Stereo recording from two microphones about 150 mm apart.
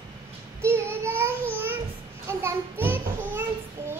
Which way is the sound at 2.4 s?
15° right (ahead or behind).